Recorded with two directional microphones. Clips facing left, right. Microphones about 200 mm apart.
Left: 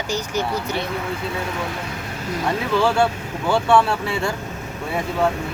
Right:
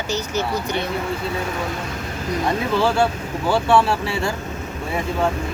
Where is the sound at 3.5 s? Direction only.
5° right (ahead or behind).